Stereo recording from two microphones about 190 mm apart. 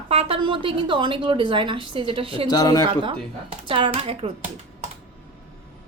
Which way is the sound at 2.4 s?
20° left (ahead or behind).